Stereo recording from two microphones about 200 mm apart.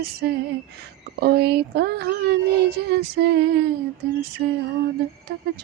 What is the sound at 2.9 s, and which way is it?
Lullaby, 55° right (ahead or behind).